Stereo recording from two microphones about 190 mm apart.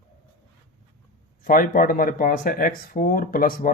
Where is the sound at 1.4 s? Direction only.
45° left (ahead or behind).